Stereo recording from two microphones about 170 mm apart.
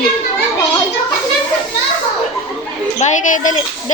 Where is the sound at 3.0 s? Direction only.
50° left (ahead or behind).